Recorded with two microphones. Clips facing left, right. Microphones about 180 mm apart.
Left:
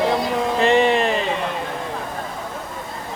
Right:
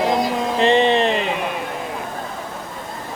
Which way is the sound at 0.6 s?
20° right (ahead or behind).